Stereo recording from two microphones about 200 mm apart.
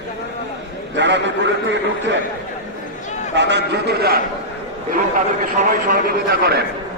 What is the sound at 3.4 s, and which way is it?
Speech, 60° right (ahead or behind).